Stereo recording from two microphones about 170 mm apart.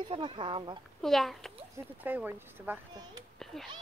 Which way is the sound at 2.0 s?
10° right (ahead or behind).